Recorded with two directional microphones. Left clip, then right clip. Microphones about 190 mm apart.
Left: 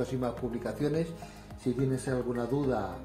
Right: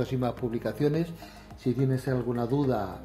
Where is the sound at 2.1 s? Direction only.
50° right (ahead or behind).